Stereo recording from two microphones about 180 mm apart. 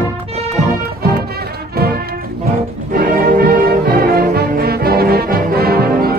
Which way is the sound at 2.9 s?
50° right (ahead or behind).